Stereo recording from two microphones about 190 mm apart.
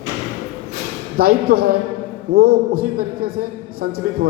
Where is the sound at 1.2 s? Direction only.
50° right (ahead or behind).